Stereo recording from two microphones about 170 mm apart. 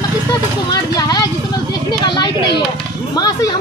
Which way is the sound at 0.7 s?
20° left (ahead or behind).